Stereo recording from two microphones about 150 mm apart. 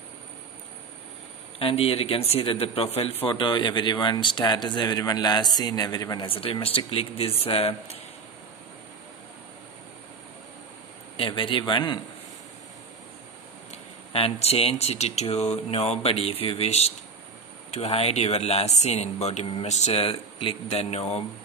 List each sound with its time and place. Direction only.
1.6 s speech: 40° left (ahead or behind)
11.1 s speech: 35° left (ahead or behind)
13.7 s speech: 40° left (ahead or behind)